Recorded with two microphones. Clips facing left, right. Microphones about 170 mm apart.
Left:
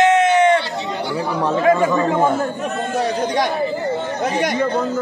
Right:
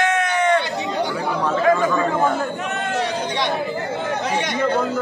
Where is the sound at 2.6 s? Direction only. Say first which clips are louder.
Left 2 dB; 85° right.